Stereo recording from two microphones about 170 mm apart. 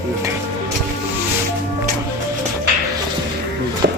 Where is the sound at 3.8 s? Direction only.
65° right (ahead or behind).